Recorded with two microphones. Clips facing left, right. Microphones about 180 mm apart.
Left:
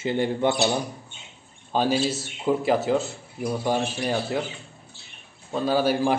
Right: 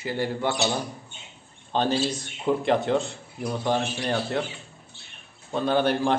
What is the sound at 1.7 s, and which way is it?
Speech, 5° left (ahead or behind).